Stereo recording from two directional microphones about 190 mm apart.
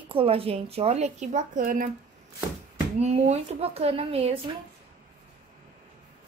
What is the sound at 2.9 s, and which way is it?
A woman's voice, 35° right (ahead or behind).